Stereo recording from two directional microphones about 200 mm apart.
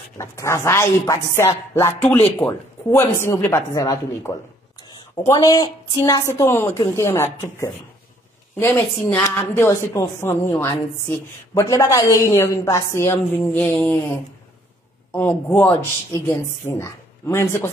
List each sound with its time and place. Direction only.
0.2 s a woman's voice: 15° left (ahead or behind)
15.1 s a woman's voice: 10° left (ahead or behind)